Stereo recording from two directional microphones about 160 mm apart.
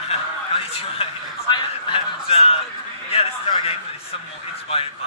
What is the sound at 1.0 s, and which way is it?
A man's voice, 35° left (ahead or behind).